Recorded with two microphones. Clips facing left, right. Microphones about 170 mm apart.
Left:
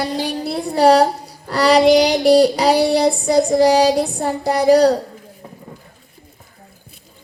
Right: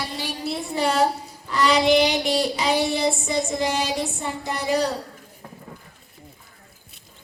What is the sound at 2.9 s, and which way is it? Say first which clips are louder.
Child singing: left 7 dB; 70° left (ahead or behind).